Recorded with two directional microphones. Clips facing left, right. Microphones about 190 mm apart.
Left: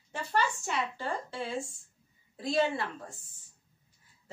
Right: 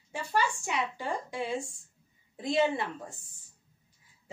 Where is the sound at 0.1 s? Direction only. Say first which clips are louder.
Right 1 dB; 10° right (ahead or behind).